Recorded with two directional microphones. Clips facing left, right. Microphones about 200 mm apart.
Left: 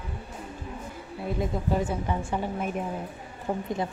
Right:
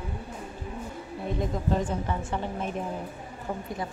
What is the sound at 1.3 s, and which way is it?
A woman's voice, 10° left (ahead or behind).